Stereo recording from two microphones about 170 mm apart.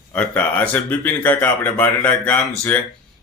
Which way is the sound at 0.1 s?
10° left (ahead or behind).